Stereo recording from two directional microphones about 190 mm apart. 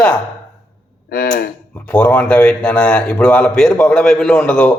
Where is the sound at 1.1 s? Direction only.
55° left (ahead or behind).